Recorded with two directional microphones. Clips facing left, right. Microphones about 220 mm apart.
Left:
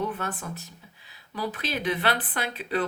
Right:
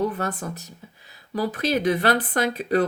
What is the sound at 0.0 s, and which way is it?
Speech, 40° right (ahead or behind).